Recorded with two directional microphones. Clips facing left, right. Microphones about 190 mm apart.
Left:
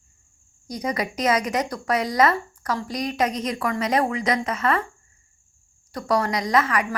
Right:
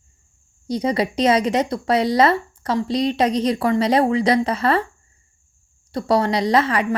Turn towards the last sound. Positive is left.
turn(degrees=-30)  # may be behind; listen again after turning